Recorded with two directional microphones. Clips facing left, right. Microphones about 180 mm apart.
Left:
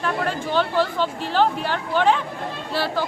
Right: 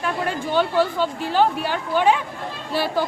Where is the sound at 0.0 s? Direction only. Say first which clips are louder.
Even; 10° right (ahead or behind).